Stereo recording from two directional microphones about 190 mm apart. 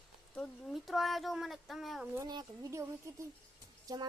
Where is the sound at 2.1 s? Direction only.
20° right (ahead or behind).